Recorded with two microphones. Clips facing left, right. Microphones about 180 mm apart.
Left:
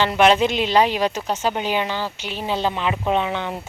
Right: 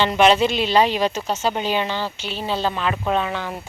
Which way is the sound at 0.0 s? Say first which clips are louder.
Even; 10° left (ahead or behind).